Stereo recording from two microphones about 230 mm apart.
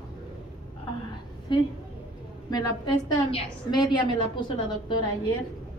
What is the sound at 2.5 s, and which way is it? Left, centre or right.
A woman's voice, centre.